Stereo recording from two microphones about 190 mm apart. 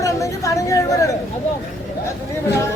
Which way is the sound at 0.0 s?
15° left (ahead or behind).